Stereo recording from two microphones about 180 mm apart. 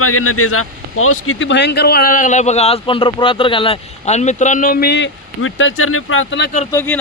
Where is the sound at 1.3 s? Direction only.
85° left.